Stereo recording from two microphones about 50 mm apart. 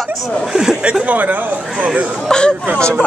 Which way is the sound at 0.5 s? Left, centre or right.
Centre.